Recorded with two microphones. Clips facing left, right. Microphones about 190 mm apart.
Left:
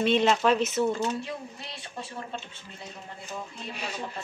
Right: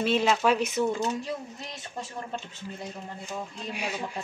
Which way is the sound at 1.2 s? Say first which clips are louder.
Right 2 dB; 45° right (ahead or behind).